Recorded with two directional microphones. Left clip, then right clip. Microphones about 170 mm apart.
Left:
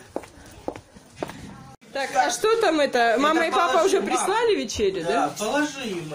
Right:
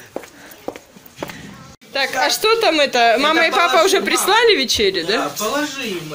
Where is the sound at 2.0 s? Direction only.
10° left (ahead or behind).